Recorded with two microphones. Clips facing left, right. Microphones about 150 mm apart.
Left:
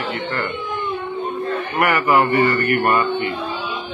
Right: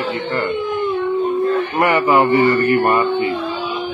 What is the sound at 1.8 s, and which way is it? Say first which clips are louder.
A man's voice: right 1 dB; 25° right (ahead or behind).